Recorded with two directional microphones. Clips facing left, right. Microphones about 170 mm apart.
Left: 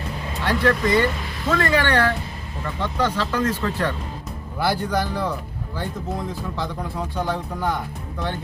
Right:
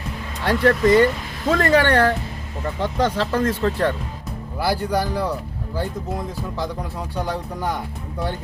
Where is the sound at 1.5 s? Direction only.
35° right (ahead or behind).